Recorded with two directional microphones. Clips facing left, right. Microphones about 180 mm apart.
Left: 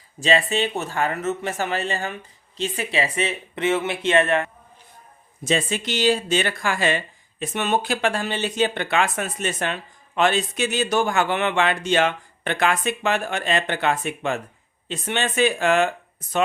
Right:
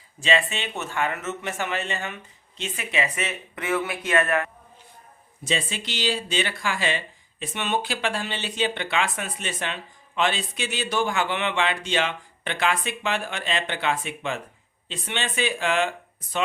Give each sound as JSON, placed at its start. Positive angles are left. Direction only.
{"t": 0.2, "sound": "speech", "side_deg": 35}
{"t": 5.5, "sound": "speech", "side_deg": 45}